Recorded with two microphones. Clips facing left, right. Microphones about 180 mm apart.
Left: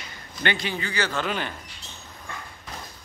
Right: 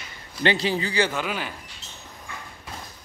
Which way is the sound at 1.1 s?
5° right (ahead or behind).